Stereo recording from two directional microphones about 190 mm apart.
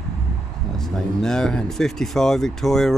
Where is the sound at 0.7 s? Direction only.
5° left (ahead or behind).